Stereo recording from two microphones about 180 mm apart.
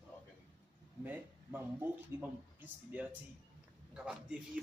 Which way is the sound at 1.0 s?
10° right (ahead or behind).